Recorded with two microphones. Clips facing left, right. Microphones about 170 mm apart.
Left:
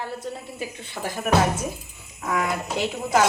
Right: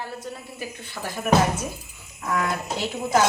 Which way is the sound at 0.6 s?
25° left (ahead or behind).